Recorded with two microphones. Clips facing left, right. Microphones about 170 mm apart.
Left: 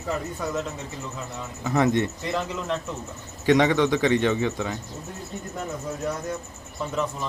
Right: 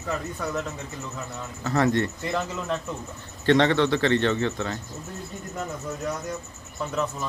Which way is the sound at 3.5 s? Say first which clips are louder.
Left 1 dB; 10° left (ahead or behind).